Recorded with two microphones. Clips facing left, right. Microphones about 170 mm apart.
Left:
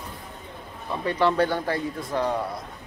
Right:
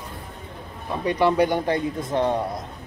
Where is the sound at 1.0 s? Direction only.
15° right (ahead or behind).